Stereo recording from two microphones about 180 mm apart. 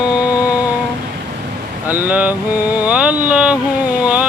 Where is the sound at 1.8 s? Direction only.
10° right (ahead or behind).